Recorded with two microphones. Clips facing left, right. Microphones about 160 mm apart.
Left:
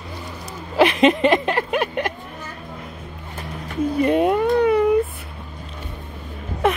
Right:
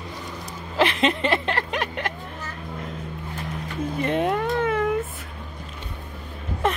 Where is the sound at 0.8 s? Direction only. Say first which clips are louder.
Left 6 dB; 15° left (ahead or behind).